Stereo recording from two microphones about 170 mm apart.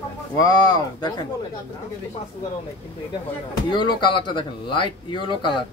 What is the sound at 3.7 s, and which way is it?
Speech, 25° left (ahead or behind).